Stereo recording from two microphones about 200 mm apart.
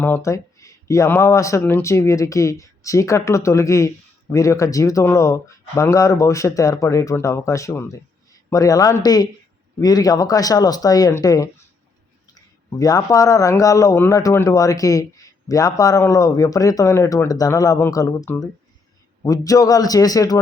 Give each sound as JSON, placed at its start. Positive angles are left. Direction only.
{"t": 0.0, "sound": "speech", "side_deg": 10}
{"t": 12.8, "sound": "speech", "side_deg": 15}